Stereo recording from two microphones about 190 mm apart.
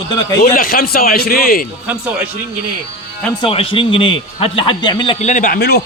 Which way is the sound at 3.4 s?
30° left (ahead or behind).